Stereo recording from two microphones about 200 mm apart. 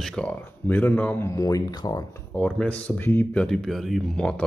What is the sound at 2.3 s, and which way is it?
Speech, 5° left (ahead or behind).